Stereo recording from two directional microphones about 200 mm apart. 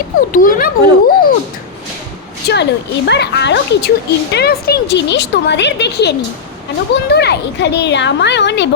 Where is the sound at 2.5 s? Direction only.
60° left (ahead or behind).